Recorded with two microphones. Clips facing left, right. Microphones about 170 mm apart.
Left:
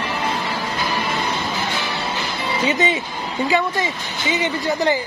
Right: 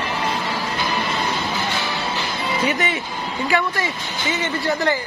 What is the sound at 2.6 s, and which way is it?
Speech, 20° left (ahead or behind).